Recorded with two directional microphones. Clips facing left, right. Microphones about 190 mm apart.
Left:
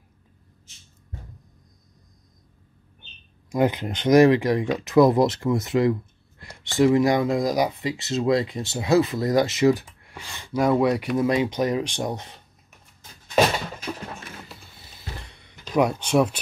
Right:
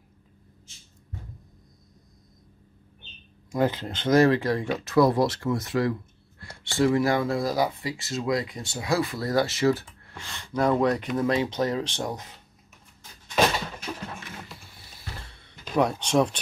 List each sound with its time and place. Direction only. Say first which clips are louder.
3.5 s speech: left 3 dB; 15° left (ahead or behind)
15.1 s a sound: left 2 dB; 15° left (ahead or behind)
15.8 s speech: left 2 dB; 10° left (ahead or behind)